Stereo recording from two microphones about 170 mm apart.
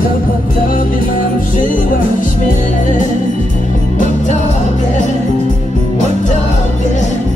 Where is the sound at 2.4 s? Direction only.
50° left (ahead or behind).